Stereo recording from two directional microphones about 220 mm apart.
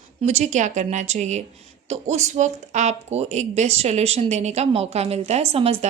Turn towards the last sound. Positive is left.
turn(degrees=-25)  # may be behind; listen again after turning